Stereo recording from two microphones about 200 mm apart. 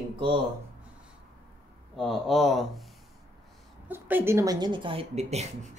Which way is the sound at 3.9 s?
10° right (ahead or behind).